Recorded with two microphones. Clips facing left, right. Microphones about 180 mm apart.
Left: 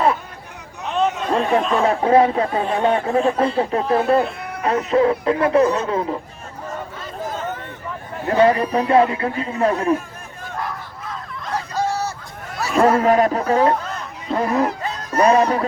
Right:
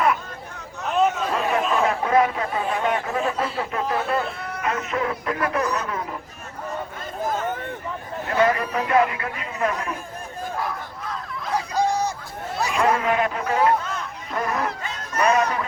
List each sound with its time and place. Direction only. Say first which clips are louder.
0.9 s chatter: even; 5° right (ahead or behind)
1.3 s chatter: left 5 dB; 30° left (ahead or behind)
1.8 s speech: left 5 dB; 30° left (ahead or behind)
8.3 s speech: left 6 dB; 30° left (ahead or behind)
10.6 s hubbub: even; centre (ahead or behind)
11.5 s a sound: even; 15° right (ahead or behind)
12.7 s speech: left 7 dB; 40° left (ahead or behind)
14.8 s music: left 6 dB; 35° left (ahead or behind)